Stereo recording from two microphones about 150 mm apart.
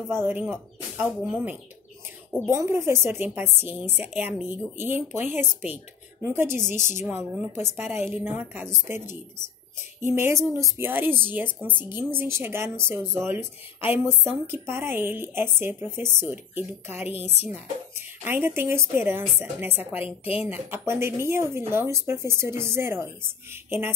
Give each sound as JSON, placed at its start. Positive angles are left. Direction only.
{"t": 0.1, "sound": "speech", "side_deg": -15}
{"t": 20.1, "sound": "a woman's voice", "side_deg": 40}
{"t": 20.4, "sound": "speech", "side_deg": -15}